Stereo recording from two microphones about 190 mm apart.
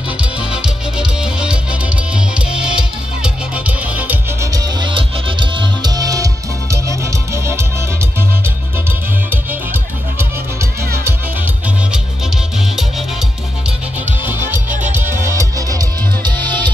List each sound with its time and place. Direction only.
0.4 s music: 5° right (ahead or behind)
4.5 s music: 20° right (ahead or behind)
9.3 s music: 10° right (ahead or behind)
13.7 s music: 10° right (ahead or behind)